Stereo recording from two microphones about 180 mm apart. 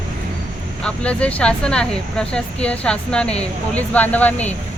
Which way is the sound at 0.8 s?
5° left (ahead or behind).